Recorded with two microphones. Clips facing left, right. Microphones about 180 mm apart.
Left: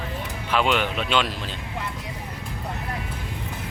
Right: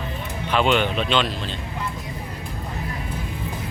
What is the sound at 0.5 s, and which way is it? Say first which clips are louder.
Speech: right 3 dB; 5° left (ahead or behind).